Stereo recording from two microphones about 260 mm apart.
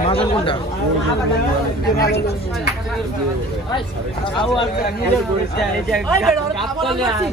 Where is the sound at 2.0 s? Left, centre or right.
Left.